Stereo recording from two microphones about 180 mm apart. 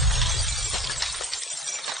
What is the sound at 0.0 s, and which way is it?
Shatter, centre (ahead or behind).